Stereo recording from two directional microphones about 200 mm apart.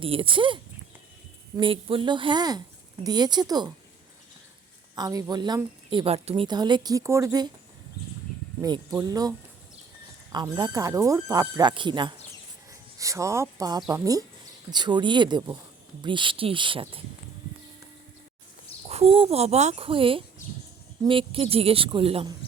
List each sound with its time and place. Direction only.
0.0 s a woman's voice: 25° right (ahead or behind)
4.9 s a woman's voice: 20° right (ahead or behind)
8.6 s a woman's voice: 20° right (ahead or behind)
10.3 s a woman's voice: 20° right (ahead or behind)
18.9 s a woman's voice: 30° right (ahead or behind)